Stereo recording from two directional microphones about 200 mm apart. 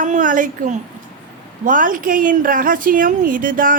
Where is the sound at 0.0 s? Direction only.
40° right (ahead or behind).